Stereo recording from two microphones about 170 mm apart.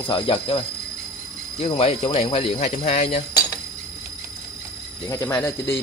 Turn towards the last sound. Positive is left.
turn(degrees=15)  # may be behind; listen again after turning